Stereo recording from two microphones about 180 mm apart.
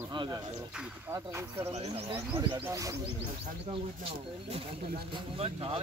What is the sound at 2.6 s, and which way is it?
Speech, 15° right (ahead or behind).